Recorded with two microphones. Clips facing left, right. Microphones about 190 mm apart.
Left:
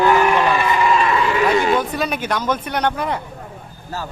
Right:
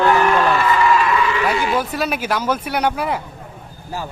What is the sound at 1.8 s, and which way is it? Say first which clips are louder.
Speech: even; 5° right (ahead or behind).